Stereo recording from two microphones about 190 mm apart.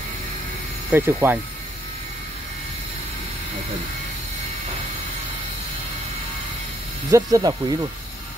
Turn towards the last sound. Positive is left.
turn(degrees=-20)  # may be behind; listen again after turning